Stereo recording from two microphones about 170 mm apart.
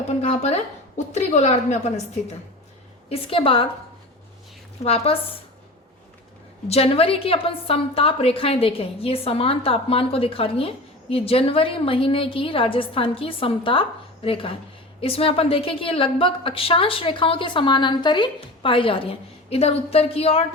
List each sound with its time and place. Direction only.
0.2 s a woman's voice: 40° left (ahead or behind)
3.1 s a woman's voice: 35° left (ahead or behind)
4.8 s a woman's voice: 35° left (ahead or behind)
6.7 s a woman's voice: 35° left (ahead or behind)